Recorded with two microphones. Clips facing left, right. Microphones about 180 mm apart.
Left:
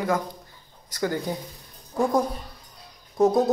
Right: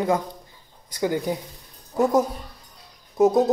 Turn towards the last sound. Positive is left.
turn(degrees=-5)  # may be behind; listen again after turning